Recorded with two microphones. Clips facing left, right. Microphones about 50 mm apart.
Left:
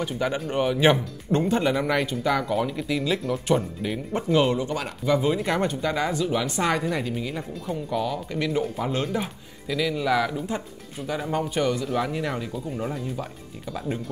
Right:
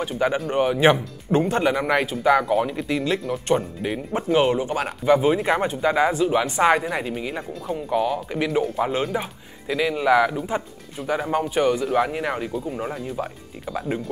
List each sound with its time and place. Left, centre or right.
0.0 s speech: centre
3.8 s speech: centre
13.8 s speech: centre